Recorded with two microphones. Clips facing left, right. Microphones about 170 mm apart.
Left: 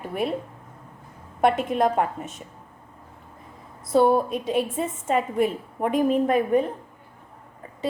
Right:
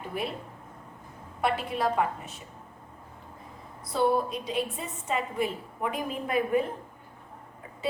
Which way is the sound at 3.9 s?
55° left (ahead or behind).